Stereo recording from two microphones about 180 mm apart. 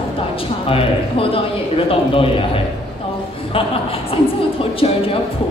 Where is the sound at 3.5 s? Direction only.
30° left (ahead or behind).